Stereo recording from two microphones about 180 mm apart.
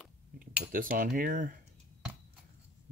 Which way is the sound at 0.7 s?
50° right (ahead or behind).